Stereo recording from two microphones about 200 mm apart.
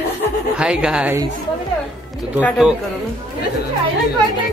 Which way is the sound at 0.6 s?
5° right (ahead or behind).